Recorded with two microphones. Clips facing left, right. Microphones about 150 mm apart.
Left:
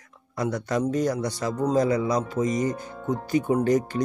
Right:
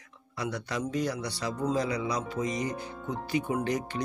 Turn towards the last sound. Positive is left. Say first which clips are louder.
# left 8 dB
turn(degrees=45)  # may be behind; listen again after turning